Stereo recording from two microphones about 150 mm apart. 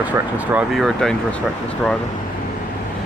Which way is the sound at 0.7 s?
Centre (ahead or behind).